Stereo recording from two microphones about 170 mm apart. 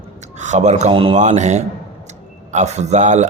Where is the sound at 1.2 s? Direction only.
40° right (ahead or behind).